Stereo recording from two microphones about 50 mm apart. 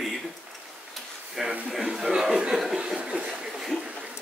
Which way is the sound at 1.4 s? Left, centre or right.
Centre.